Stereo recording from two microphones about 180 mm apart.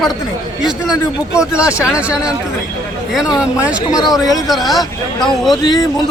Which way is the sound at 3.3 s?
5° right (ahead or behind).